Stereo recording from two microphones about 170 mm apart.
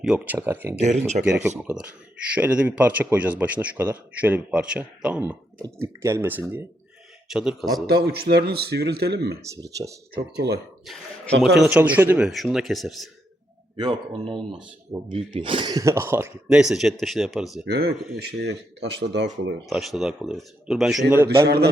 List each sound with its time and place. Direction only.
0.0 s speech: 5° right (ahead or behind)
0.8 s speech: 40° right (ahead or behind)
1.5 s a man's voice: 10° right (ahead or behind)
7.9 s speech: 70° right (ahead or behind)
9.6 s speech: 20° right (ahead or behind)
10.2 s speech: 75° right (ahead or behind)
10.8 s a man's voice: centre (ahead or behind)
15.1 s speech: 30° right (ahead or behind); by 17.7 s centre (ahead or behind)
17.7 s speech: 65° right (ahead or behind); by 19.5 s 90° right
19.6 s a man's voice: centre (ahead or behind)
21.4 s speech: 70° right (ahead or behind)